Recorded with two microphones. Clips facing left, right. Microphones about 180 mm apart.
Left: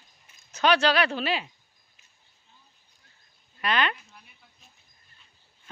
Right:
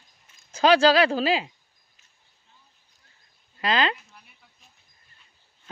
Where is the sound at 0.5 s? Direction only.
30° right (ahead or behind).